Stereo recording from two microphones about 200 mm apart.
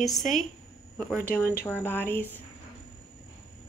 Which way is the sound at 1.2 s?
10° left (ahead or behind).